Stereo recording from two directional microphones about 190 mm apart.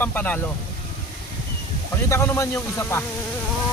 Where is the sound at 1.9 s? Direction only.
15° left (ahead or behind).